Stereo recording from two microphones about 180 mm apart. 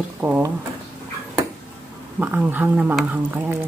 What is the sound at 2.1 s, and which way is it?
Speech, 10° right (ahead or behind).